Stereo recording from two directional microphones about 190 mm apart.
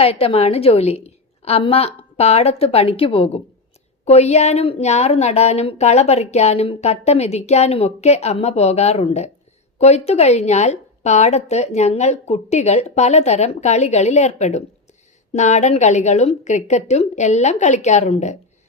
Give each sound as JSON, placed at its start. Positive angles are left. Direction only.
{"t": 0.0, "sound": "speech", "side_deg": 30}